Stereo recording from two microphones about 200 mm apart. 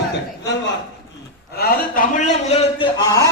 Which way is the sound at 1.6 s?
50° left (ahead or behind).